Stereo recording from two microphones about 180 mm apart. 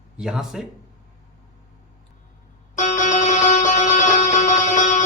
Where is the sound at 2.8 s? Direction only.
45° left (ahead or behind).